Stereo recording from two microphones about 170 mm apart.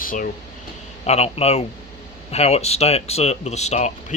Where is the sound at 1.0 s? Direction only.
40° left (ahead or behind).